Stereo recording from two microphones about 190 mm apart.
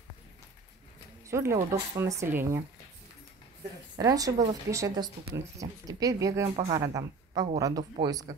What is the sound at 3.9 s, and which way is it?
Speech, 20° right (ahead or behind).